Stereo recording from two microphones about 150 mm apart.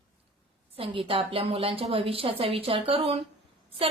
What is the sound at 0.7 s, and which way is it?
A woman's voice, 35° right (ahead or behind).